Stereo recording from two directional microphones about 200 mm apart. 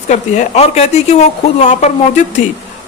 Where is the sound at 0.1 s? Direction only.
35° left (ahead or behind).